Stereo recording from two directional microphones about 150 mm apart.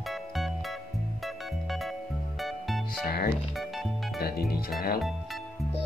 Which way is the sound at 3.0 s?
90° left.